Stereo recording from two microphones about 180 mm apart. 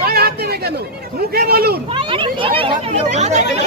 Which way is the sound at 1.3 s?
55° right (ahead or behind).